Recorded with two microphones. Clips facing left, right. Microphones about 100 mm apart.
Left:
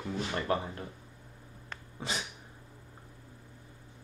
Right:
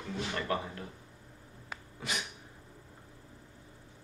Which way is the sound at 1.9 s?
30° left (ahead or behind).